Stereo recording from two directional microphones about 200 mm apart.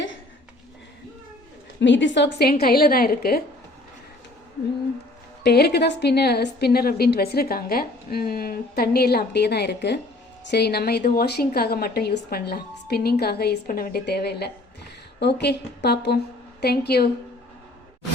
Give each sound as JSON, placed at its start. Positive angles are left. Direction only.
{"t": 1.8, "sound": "a woman's voice", "side_deg": 65}
{"t": 5.4, "sound": "a woman's voice", "side_deg": 55}